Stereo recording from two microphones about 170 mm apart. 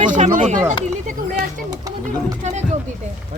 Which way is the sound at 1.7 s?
20° right (ahead or behind).